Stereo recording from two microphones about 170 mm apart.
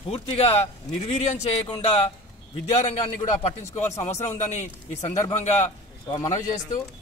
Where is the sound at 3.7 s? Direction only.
15° left (ahead or behind).